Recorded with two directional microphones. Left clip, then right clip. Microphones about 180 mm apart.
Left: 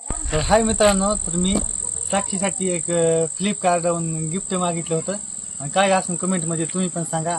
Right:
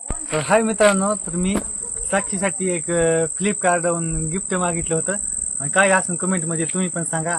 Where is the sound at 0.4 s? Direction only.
5° right (ahead or behind).